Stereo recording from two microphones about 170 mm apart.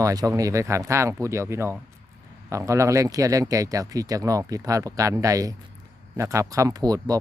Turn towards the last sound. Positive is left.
turn(degrees=-20)  # may be behind; listen again after turning